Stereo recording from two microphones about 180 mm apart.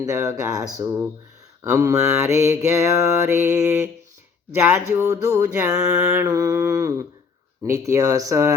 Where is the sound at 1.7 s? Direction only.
15° right (ahead or behind).